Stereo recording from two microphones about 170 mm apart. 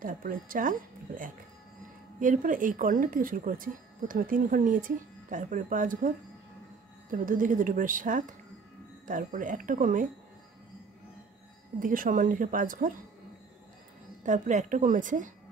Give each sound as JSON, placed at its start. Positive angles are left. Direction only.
{"t": 0.0, "sound": "speech", "side_deg": -55}
{"t": 11.8, "sound": "speech", "side_deg": -50}
{"t": 14.2, "sound": "speech", "side_deg": -45}